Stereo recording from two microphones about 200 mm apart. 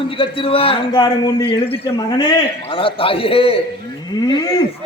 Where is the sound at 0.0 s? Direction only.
25° left (ahead or behind).